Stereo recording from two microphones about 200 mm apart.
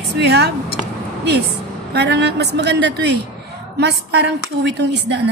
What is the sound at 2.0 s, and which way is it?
A woman's voice, 55° right (ahead or behind).